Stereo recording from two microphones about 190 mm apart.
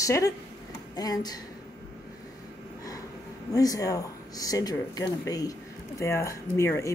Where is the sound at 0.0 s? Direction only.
15° left (ahead or behind).